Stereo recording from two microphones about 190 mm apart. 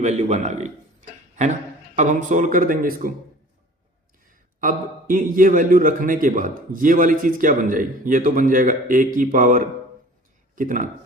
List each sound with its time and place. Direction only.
0.0 s a man's voice: 35° right (ahead or behind)
2.0 s a man's voice: 40° right (ahead or behind)
4.6 s a man's voice: 45° right (ahead or behind)